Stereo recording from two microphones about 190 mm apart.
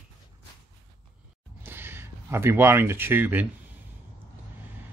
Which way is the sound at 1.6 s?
10° right (ahead or behind).